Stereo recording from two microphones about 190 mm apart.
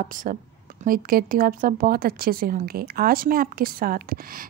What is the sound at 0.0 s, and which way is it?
Speech, 45° right (ahead or behind).